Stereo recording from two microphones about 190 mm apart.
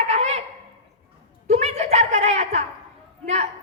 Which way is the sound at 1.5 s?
35° right (ahead or behind).